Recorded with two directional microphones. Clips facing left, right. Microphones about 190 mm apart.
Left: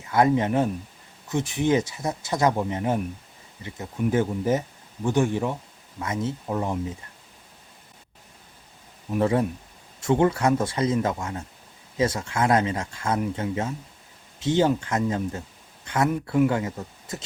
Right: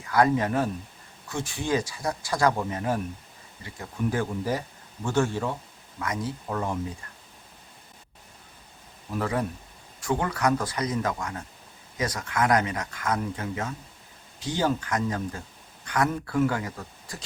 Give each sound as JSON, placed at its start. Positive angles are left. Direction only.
{"t": 0.0, "sound": "speech", "side_deg": 20}
{"t": 9.1, "sound": "speech", "side_deg": 25}